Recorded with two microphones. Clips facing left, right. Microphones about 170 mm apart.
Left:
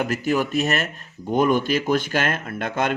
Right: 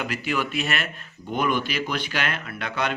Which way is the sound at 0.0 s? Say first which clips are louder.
Left 5 dB; 45° left (ahead or behind).